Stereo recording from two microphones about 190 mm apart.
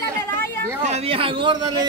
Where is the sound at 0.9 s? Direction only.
30° right (ahead or behind).